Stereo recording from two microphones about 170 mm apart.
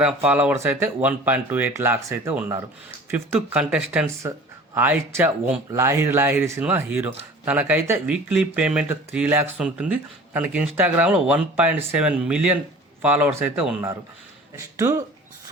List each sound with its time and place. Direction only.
0.0 s speech: 10° right (ahead or behind)
14.5 s speech: 20° right (ahead or behind)